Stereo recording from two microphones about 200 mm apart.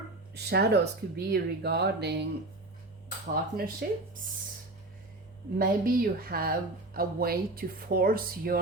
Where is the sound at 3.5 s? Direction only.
50° right (ahead or behind).